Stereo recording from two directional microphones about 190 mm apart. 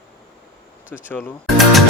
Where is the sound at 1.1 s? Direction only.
10° left (ahead or behind).